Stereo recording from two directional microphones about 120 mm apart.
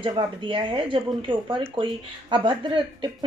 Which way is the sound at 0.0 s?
45° right (ahead or behind).